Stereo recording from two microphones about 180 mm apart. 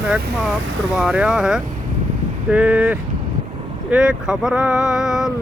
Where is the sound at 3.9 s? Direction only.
5° right (ahead or behind).